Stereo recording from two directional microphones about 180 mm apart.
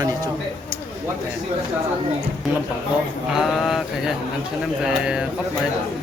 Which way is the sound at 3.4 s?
Centre (ahead or behind).